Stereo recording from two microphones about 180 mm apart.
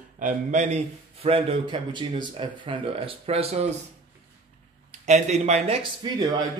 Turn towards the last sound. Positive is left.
turn(degrees=-20)  # may be behind; listen again after turning